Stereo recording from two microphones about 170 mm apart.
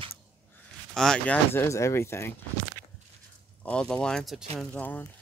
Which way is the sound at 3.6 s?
5° left (ahead or behind).